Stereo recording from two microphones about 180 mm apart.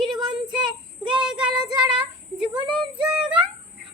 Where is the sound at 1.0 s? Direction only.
5° right (ahead or behind).